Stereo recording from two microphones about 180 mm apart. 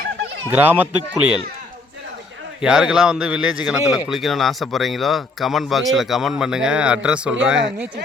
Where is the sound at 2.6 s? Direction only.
5° right (ahead or behind).